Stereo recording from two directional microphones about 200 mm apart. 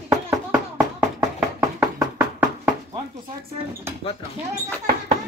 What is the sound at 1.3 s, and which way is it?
Knock, 10° right (ahead or behind).